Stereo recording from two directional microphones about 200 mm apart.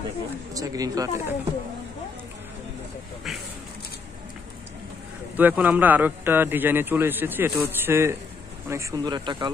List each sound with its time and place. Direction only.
0.6 s a man's voice: 20° right (ahead or behind)
3.3 s a sound: centre (ahead or behind)
5.3 s a man's voice: 10° right (ahead or behind)